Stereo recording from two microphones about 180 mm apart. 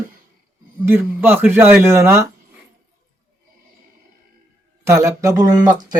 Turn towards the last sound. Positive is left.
turn(degrees=-20)  # may be behind; listen again after turning